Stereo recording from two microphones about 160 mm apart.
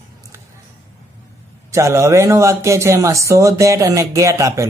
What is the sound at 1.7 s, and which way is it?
Speech, 20° right (ahead or behind).